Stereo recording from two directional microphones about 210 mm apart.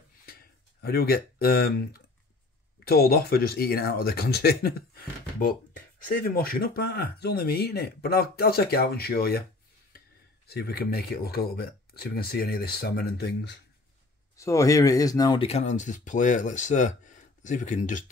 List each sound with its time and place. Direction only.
0.8 s speech: 50° left (ahead or behind)
2.9 s speech: 45° left (ahead or behind)
14.3 s speech: 15° left (ahead or behind)
15.4 s speech: 30° left (ahead or behind)